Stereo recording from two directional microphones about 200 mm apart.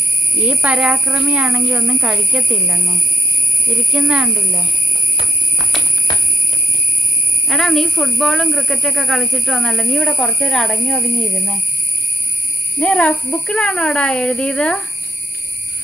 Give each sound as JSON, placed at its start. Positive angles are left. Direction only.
{"t": 0.4, "sound": "speech", "side_deg": -5}
{"t": 7.4, "sound": "speech", "side_deg": 0}
{"t": 12.8, "sound": "speech", "side_deg": 5}